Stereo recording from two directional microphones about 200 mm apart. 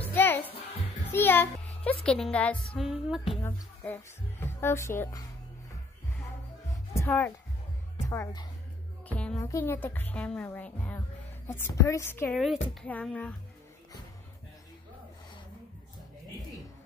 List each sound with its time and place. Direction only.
0.1 s music: 10° left (ahead or behind)
1.1 s a child's voice: 10° left (ahead or behind)
3.4 s speech: 10° left (ahead or behind)
6.9 s music: 15° left (ahead or behind)
8.1 s speech: 15° left (ahead or behind)
9.1 s speech: 5° left (ahead or behind)
9.4 s speech: 15° left (ahead or behind)